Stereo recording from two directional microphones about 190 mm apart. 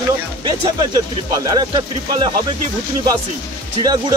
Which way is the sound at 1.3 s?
20° right (ahead or behind).